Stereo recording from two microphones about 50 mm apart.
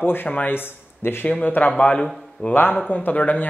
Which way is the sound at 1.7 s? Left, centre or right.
Left.